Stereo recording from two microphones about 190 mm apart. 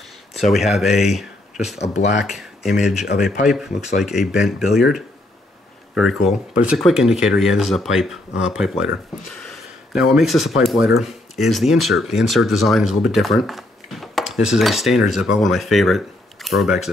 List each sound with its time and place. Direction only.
0.3 s speech: centre (ahead or behind)
5.9 s speech: 5° right (ahead or behind)
9.3 s a sound: 5° left (ahead or behind)
10.6 s speech: centre (ahead or behind)